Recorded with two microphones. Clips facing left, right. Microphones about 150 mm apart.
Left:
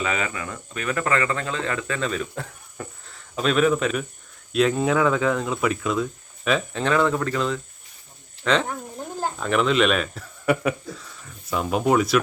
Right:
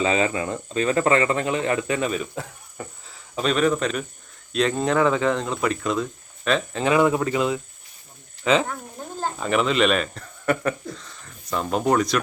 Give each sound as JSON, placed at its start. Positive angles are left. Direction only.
{"t": 0.0, "sound": "speech", "side_deg": -30}
{"t": 6.8, "sound": "speech", "side_deg": -10}
{"t": 8.6, "sound": "cricket", "side_deg": 15}
{"t": 9.4, "sound": "speech", "side_deg": 0}